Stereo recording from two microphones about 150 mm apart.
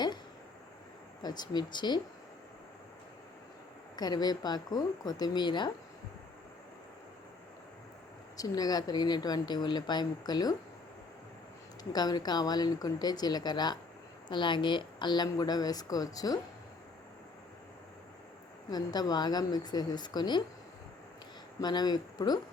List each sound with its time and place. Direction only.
1.2 s a woman's voice: 30° left (ahead or behind)
3.9 s a woman's voice: 25° left (ahead or behind)
8.4 s a woman's voice: 25° left (ahead or behind)
11.8 s a woman's voice: 25° left (ahead or behind)
18.7 s a woman's voice: 25° left (ahead or behind)
21.6 s a woman's voice: 25° left (ahead or behind)